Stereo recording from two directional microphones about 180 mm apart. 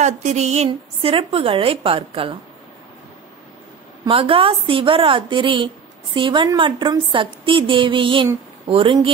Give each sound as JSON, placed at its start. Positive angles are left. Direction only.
{"t": 0.0, "sound": "a woman's voice", "side_deg": -40}
{"t": 4.0, "sound": "a woman's voice", "side_deg": -30}